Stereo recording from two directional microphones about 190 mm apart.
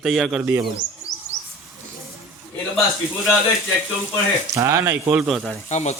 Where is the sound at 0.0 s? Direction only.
Centre (ahead or behind).